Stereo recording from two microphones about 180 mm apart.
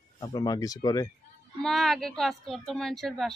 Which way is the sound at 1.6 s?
Centre (ahead or behind).